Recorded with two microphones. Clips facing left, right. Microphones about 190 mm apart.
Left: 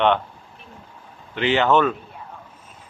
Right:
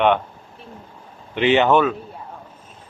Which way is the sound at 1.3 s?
20° right (ahead or behind).